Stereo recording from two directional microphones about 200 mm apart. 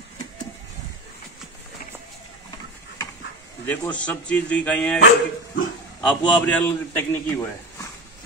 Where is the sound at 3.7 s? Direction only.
5° left (ahead or behind).